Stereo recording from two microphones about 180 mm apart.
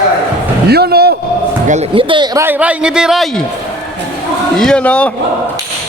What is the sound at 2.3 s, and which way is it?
A man's voice, 10° right (ahead or behind).